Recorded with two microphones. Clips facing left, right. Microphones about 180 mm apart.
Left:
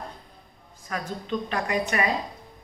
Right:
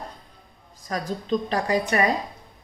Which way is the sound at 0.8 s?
35° right (ahead or behind).